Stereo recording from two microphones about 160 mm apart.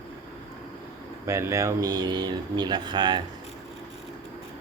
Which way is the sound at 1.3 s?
20° right (ahead or behind).